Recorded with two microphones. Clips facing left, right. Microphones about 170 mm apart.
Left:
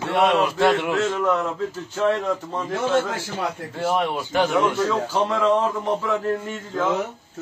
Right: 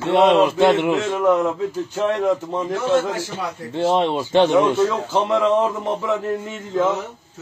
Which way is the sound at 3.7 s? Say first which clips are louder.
Right 6 dB; 25° right (ahead or behind).